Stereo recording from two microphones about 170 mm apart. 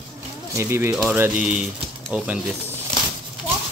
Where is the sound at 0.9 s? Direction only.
5° right (ahead or behind).